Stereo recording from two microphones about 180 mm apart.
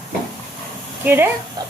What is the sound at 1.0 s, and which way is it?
Speech, 10° right (ahead or behind).